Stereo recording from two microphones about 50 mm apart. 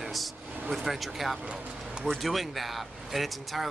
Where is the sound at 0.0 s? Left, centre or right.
Centre.